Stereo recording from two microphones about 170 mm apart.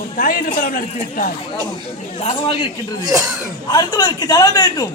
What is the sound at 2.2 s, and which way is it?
Speech, 30° left (ahead or behind).